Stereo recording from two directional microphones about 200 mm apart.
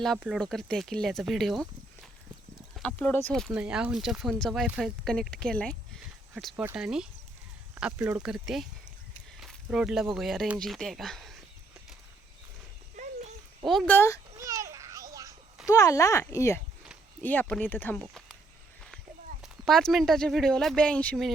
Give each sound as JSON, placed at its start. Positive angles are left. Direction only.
{"t": 0.0, "sound": "speech", "side_deg": 0}
{"t": 3.5, "sound": "speech", "side_deg": -5}
{"t": 6.3, "sound": "speech", "side_deg": -5}
{"t": 9.4, "sound": "a sound", "side_deg": 0}
{"t": 10.2, "sound": "speech", "side_deg": 0}
{"t": 13.7, "sound": "speech", "side_deg": 5}
{"t": 14.3, "sound": "a sound", "side_deg": -15}
{"t": 15.6, "sound": "speech", "side_deg": 15}
{"t": 19.4, "sound": "speech", "side_deg": 0}